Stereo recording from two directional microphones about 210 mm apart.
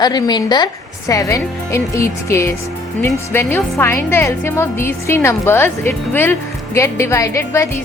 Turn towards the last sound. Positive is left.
turn(degrees=15)  # may be behind; listen again after turning